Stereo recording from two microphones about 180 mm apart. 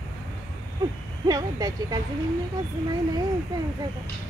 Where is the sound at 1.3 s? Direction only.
20° right (ahead or behind).